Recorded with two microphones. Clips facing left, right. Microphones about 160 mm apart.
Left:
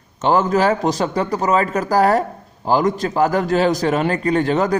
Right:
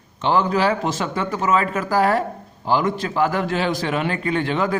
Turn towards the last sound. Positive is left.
turn(degrees=40)  # may be behind; listen again after turning